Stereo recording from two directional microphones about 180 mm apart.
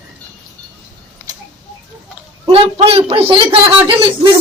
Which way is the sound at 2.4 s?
30° right (ahead or behind).